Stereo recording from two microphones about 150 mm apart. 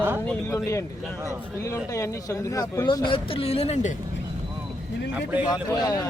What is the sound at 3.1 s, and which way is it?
Speech, 35° left (ahead or behind).